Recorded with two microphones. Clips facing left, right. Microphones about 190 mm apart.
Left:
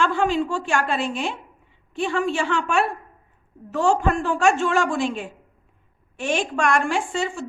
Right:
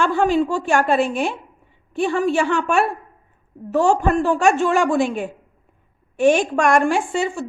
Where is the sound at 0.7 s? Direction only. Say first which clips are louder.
Right 6 dB; 50° right (ahead or behind).